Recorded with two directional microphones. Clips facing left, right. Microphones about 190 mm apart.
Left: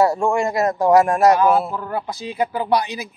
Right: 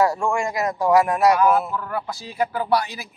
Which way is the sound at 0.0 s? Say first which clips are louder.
Left 3 dB; 20° left (ahead or behind).